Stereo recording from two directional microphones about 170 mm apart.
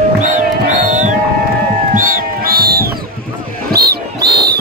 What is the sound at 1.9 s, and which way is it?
Music, 55° right (ahead or behind).